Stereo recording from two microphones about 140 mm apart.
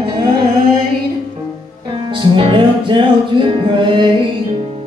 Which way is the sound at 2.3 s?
35° right (ahead or behind).